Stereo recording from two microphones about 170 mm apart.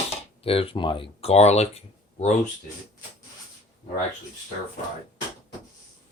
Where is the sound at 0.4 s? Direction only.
35° left (ahead or behind).